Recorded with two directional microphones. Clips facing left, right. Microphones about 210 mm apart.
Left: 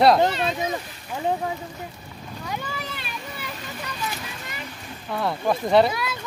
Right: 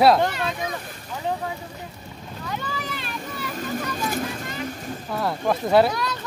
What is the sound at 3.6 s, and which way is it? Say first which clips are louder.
Vehicle: right 8 dB; 45° right (ahead or behind).